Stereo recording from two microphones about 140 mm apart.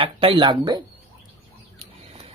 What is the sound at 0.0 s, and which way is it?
Speech, 40° right (ahead or behind).